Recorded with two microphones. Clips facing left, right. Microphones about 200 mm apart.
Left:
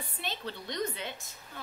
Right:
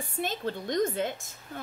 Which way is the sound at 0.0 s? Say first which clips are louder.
Right 7 dB; 45° right (ahead or behind).